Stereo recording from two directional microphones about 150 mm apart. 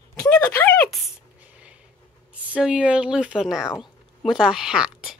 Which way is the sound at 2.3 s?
10° right (ahead or behind).